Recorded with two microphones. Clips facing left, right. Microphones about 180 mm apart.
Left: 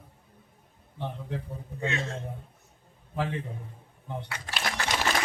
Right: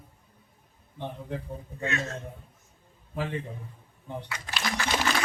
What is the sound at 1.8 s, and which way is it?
Speech, 25° left (ahead or behind).